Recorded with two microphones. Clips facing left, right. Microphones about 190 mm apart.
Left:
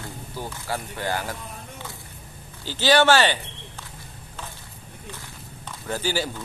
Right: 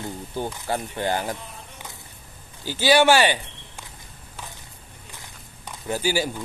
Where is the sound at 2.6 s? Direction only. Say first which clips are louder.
Right 1 dB; 10° right (ahead or behind).